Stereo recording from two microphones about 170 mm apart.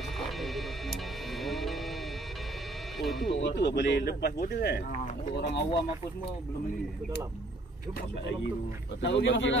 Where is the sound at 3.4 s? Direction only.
90° left; by 4.7 s 70° left (ahead or behind).